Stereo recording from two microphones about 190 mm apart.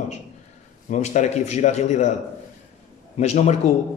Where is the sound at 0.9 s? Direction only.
40° left (ahead or behind).